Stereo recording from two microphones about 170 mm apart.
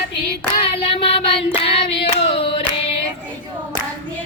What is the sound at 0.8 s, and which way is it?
Child singing, 35° left (ahead or behind).